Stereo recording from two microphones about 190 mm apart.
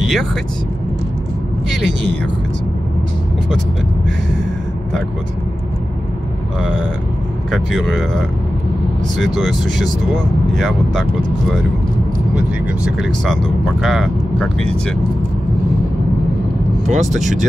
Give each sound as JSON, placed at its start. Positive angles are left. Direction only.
{"t": 0.0, "sound": "speech", "side_deg": 0}
{"t": 7.5, "sound": "speech", "side_deg": 0}
{"t": 12.4, "sound": "speech", "side_deg": -5}
{"t": 16.8, "sound": "speech", "side_deg": -35}